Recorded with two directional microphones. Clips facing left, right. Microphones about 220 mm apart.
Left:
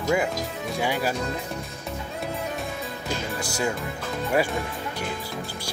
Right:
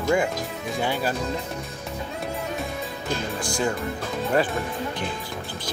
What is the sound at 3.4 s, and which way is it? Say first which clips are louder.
Speech: right 2 dB; 5° left (ahead or behind).